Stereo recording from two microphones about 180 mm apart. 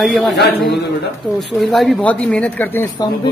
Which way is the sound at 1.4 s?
Centre (ahead or behind).